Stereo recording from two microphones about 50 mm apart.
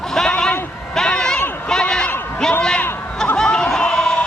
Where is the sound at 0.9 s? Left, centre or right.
Centre.